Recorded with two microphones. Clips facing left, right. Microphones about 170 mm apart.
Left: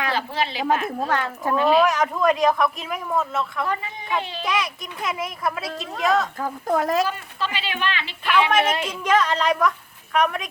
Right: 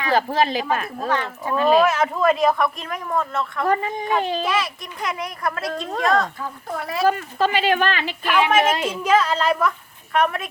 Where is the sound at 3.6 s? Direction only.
45° right (ahead or behind).